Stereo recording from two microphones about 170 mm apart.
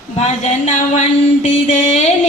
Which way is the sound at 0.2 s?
45° left (ahead or behind).